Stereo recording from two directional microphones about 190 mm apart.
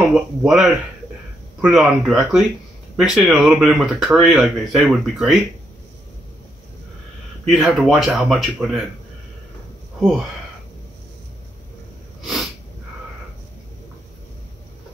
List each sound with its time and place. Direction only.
0.1 s speech: 5° right (ahead or behind)
7.4 s speech: centre (ahead or behind)
9.9 s speech: centre (ahead or behind)